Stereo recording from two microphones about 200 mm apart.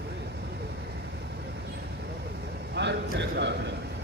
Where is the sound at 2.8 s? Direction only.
60° right (ahead or behind).